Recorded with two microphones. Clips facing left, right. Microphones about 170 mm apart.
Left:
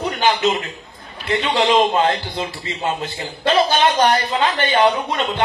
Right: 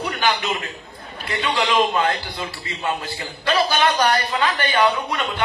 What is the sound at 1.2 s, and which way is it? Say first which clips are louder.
A man's voice: left 5 dB; 25° left (ahead or behind).